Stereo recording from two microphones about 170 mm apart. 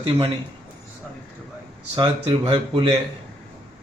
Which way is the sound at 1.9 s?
25° right (ahead or behind).